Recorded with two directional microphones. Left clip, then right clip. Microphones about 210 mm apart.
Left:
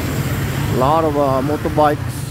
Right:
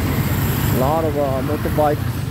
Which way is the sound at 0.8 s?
30° left (ahead or behind).